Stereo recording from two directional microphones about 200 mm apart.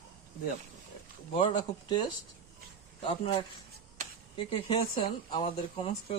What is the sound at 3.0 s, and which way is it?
Speech, 30° left (ahead or behind).